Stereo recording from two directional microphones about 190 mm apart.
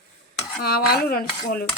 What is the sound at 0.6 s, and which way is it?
Speech, 55° left (ahead or behind).